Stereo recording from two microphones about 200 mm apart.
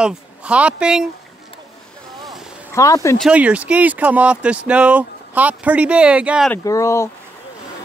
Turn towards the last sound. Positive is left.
turn(degrees=15)  # may be behind; listen again after turning